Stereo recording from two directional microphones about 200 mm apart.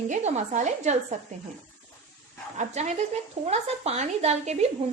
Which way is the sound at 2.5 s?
35° right (ahead or behind).